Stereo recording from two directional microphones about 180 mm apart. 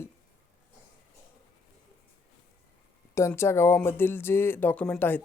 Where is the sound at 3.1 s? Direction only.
15° left (ahead or behind).